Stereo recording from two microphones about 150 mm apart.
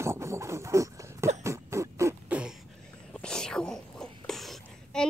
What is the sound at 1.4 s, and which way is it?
Cough, 20° right (ahead or behind).